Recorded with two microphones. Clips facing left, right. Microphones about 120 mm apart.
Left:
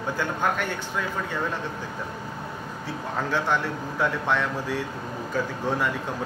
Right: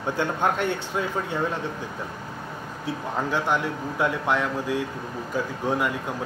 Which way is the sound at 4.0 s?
10° right (ahead or behind).